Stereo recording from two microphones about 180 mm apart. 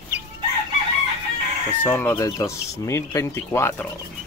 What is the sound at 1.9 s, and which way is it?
Speech, 10° left (ahead or behind).